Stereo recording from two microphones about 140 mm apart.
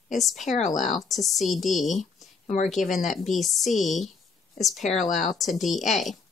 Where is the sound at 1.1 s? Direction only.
Centre (ahead or behind).